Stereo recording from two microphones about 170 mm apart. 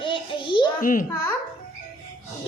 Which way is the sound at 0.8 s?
55° left (ahead or behind).